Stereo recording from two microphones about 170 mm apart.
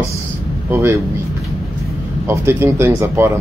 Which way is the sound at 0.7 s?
15° right (ahead or behind).